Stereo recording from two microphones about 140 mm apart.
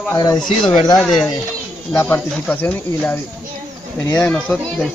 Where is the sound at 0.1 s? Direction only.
25° left (ahead or behind).